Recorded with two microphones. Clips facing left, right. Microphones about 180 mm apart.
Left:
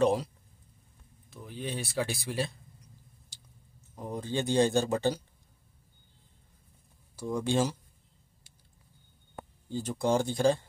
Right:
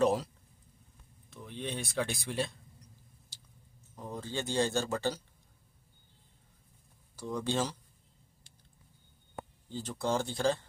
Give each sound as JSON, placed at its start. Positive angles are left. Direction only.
{"t": 0.0, "sound": "speech", "side_deg": 0}
{"t": 1.3, "sound": "speech", "side_deg": 5}
{"t": 3.9, "sound": "speech", "side_deg": 15}
{"t": 7.2, "sound": "speech", "side_deg": 10}
{"t": 9.7, "sound": "speech", "side_deg": 15}